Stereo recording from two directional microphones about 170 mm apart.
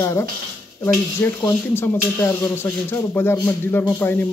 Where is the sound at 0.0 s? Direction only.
15° left (ahead or behind).